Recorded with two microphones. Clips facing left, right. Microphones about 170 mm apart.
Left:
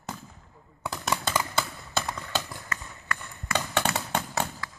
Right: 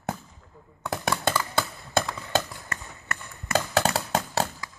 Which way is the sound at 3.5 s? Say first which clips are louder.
Right 4 dB; 40° right (ahead or behind).